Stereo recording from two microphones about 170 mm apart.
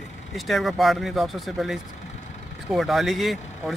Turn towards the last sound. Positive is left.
turn(degrees=0)  # may be behind; listen again after turning